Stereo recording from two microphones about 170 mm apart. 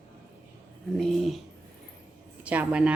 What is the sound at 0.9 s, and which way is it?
Speech, centre (ahead or behind).